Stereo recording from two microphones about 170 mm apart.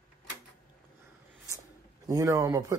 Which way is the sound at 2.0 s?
20° right (ahead or behind).